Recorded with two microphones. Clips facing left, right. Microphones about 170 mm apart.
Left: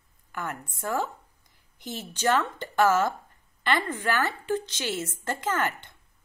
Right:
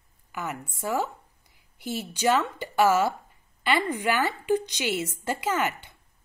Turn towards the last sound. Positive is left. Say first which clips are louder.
# right 1 dB
turn(degrees=-10)  # may be behind; listen again after turning